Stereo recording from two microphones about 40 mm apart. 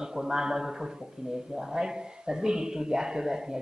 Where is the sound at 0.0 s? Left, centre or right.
Centre.